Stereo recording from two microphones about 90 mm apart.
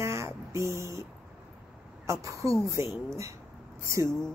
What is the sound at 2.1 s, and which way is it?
Speech, 35° right (ahead or behind).